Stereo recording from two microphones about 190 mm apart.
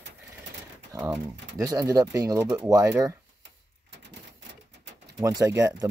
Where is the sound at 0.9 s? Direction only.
20° right (ahead or behind).